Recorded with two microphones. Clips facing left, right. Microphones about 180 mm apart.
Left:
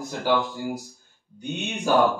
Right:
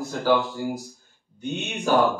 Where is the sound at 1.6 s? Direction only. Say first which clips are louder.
Even; 15° left (ahead or behind).